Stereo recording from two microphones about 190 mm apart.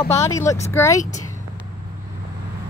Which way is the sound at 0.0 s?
15° left (ahead or behind).